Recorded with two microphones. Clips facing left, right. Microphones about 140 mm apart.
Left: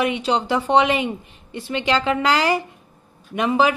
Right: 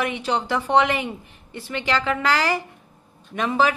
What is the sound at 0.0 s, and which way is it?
A woman's voice, 15° left (ahead or behind).